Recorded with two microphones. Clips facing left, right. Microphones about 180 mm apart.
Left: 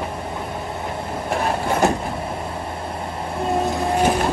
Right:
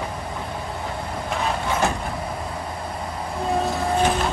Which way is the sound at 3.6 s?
20° left (ahead or behind).